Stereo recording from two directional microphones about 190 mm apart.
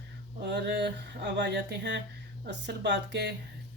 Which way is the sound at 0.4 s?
65° right (ahead or behind).